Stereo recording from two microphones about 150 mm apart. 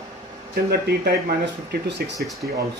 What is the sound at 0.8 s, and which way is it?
Speech, 90° right.